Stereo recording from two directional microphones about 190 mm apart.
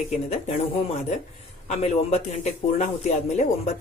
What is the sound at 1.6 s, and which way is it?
Speech, 35° left (ahead or behind).